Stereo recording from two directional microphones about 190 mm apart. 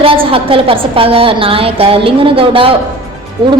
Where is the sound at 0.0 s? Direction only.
30° right (ahead or behind).